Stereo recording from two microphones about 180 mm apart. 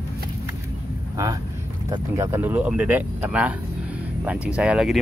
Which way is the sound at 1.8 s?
20° right (ahead or behind).